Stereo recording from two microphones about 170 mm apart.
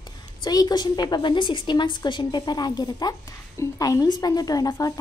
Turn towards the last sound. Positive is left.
turn(degrees=20)  # may be behind; listen again after turning